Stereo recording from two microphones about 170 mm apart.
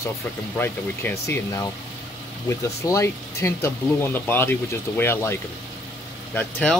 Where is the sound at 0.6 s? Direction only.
15° left (ahead or behind).